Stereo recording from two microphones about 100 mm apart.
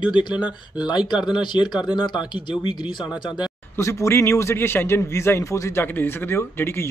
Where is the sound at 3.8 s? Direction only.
25° left (ahead or behind).